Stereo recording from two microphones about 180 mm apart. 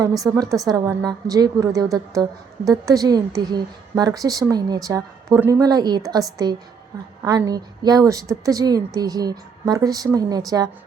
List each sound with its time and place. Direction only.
0.0 s a woman's voice: 20° right (ahead or behind)